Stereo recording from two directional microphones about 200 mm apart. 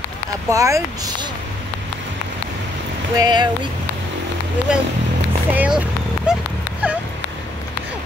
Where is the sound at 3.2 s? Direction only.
20° right (ahead or behind).